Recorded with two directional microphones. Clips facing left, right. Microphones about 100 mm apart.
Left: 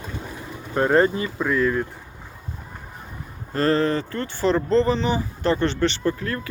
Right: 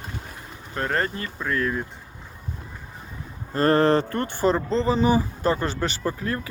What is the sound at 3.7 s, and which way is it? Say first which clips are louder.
Speech: right 4 dB; 60° right (ahead or behind).